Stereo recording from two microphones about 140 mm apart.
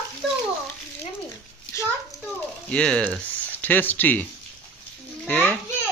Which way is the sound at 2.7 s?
5° left (ahead or behind).